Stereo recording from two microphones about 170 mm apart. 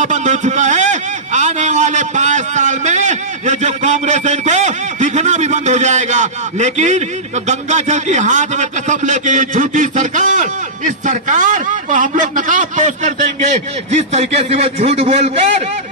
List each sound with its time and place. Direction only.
0.0 s speech: 45° right (ahead or behind)